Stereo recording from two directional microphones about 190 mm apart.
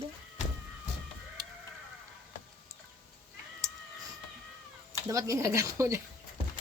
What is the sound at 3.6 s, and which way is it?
Cat, 20° right (ahead or behind).